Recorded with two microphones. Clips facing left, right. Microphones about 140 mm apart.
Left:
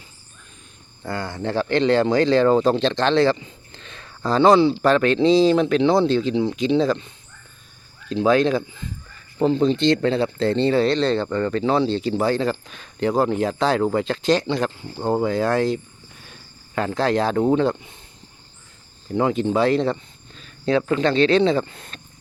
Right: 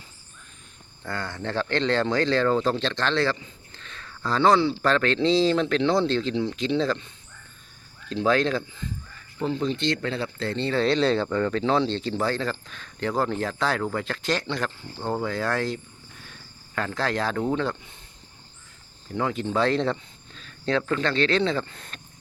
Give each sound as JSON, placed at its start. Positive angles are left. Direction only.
{"t": 1.0, "sound": "speech", "side_deg": 10}
{"t": 8.1, "sound": "speech", "side_deg": 15}
{"t": 9.4, "sound": "speech", "side_deg": 30}
{"t": 10.8, "sound": "speech", "side_deg": 0}
{"t": 19.1, "sound": "speech", "side_deg": 20}